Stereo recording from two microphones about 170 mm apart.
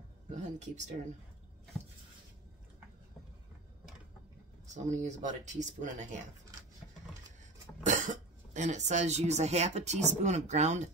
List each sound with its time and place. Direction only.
0.3 s speech: 45° right (ahead or behind)
4.7 s speech: 45° right (ahead or behind)
7.8 s speech: 45° right (ahead or behind)